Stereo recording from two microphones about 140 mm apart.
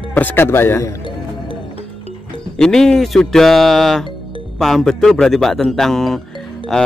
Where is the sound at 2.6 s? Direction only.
5° left (ahead or behind).